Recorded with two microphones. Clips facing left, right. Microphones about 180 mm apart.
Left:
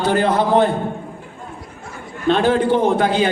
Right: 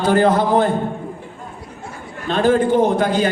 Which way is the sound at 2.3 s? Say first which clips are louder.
Even; 45° right (ahead or behind).